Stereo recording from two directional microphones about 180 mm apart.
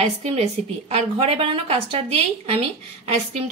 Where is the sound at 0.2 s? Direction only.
35° right (ahead or behind).